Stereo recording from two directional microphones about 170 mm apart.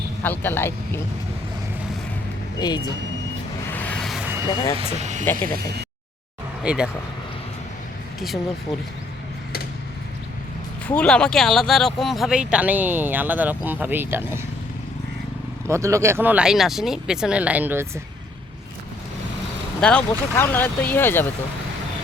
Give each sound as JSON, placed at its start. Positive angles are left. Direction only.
{"t": 0.2, "sound": "speech", "side_deg": 10}
{"t": 2.6, "sound": "speech", "side_deg": 25}
{"t": 3.7, "sound": "music", "side_deg": 10}
{"t": 4.4, "sound": "speech", "side_deg": 20}
{"t": 4.9, "sound": "speech", "side_deg": -45}
{"t": 5.2, "sound": "speech", "side_deg": 10}
{"t": 5.5, "sound": "speech", "side_deg": -65}
{"t": 6.6, "sound": "speech", "side_deg": -5}
{"t": 10.8, "sound": "speech", "side_deg": 5}
{"t": 15.6, "sound": "speech", "side_deg": -15}
{"t": 19.8, "sound": "speech", "side_deg": 5}